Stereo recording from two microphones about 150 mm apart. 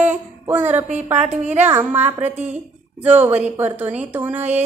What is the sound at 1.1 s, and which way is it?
Speech, 50° right (ahead or behind).